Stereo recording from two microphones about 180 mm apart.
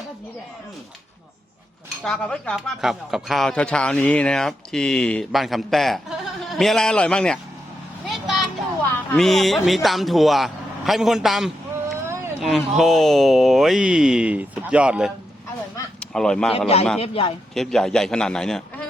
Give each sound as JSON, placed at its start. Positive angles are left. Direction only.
{"t": 2.0, "sound": "a man's voice", "side_deg": 5}
{"t": 8.1, "sound": "vehicle", "side_deg": 0}
{"t": 9.1, "sound": "a man's voice", "side_deg": 0}
{"t": 12.0, "sound": "a sound", "side_deg": -15}
{"t": 12.4, "sound": "a man's voice", "side_deg": 0}
{"t": 16.0, "sound": "a sound", "side_deg": 5}
{"t": 16.5, "sound": "a man's voice", "side_deg": 35}
{"t": 17.5, "sound": "a man's voice", "side_deg": 0}